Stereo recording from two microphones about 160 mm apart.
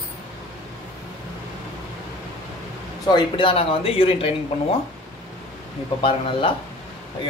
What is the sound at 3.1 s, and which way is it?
Speech, 35° left (ahead or behind).